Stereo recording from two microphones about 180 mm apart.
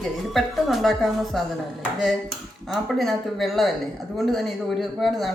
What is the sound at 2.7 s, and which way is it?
Speech, centre (ahead or behind).